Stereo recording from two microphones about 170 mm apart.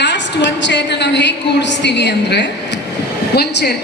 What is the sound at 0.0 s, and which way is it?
A woman's voice, 90° left.